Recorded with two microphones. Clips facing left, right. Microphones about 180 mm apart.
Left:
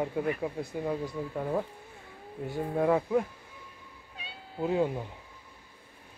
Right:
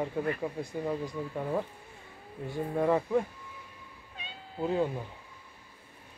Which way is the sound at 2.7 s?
5° left (ahead or behind).